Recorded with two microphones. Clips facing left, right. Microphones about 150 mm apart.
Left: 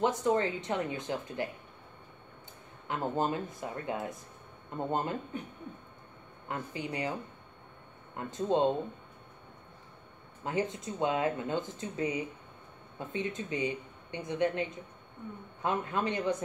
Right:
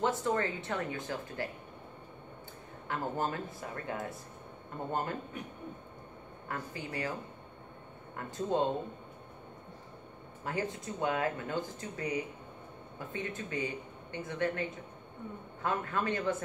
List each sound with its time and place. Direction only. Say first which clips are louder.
0.0 s speech: left 3 dB; 20° left (ahead or behind)
2.9 s speech: left 3 dB; 20° left (ahead or behind)
6.5 s speech: left 3 dB; 20° left (ahead or behind)
8.2 s speech: left 3 dB; 20° left (ahead or behind)
10.4 s speech: left 3 dB; 20° left (ahead or behind)